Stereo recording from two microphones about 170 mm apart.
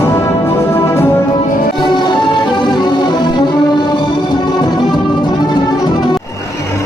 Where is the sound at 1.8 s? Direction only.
25° left (ahead or behind).